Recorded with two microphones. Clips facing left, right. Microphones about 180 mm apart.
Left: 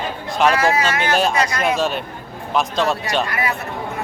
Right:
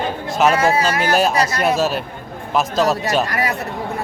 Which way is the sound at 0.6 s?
30° right (ahead or behind).